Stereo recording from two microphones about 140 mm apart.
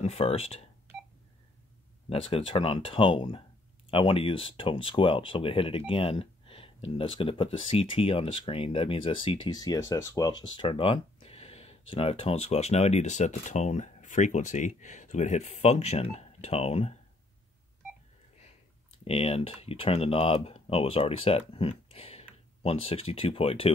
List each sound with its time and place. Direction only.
0.0 s speech: 45° left (ahead or behind)
2.0 s speech: 45° left (ahead or behind)
19.0 s speech: 45° left (ahead or behind)